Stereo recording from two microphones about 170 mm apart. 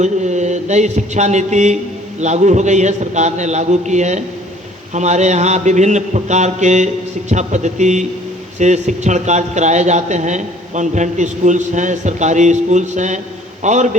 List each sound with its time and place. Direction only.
0.0 s a man's voice: 45° right (ahead or behind)